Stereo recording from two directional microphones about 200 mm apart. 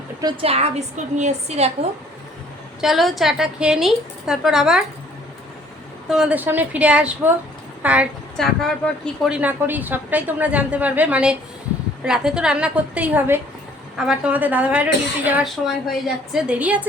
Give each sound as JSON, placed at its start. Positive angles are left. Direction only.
{"t": 0.2, "sound": "a woman's voice", "side_deg": -25}
{"t": 2.8, "sound": "speech", "side_deg": 0}
{"t": 6.1, "sound": "a woman's voice", "side_deg": -5}